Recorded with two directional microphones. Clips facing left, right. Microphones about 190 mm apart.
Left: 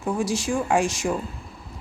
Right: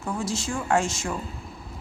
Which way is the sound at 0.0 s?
15° left (ahead or behind).